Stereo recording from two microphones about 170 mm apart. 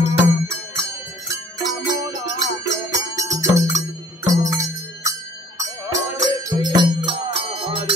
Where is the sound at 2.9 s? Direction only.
20° right (ahead or behind).